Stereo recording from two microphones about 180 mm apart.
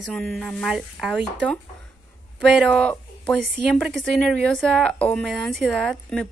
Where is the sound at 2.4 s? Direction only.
5° left (ahead or behind).